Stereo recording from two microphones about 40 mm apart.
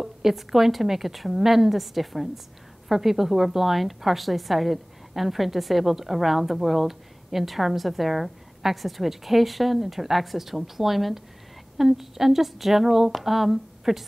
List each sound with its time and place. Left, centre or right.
0.0 s a woman's voice: centre